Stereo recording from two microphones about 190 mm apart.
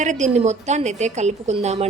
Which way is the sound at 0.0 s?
40° right (ahead or behind).